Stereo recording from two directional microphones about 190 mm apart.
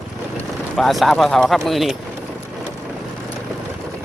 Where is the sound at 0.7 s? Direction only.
Centre (ahead or behind).